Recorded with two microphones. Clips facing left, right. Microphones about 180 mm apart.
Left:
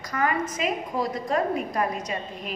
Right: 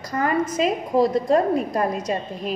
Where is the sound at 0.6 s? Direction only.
35° right (ahead or behind).